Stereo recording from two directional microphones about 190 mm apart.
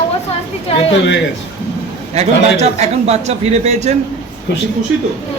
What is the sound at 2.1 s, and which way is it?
A man's voice, 35° right (ahead or behind).